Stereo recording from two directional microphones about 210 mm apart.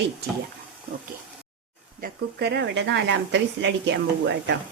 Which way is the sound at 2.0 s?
50° right (ahead or behind).